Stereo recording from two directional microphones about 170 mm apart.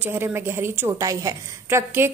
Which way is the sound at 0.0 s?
15° right (ahead or behind).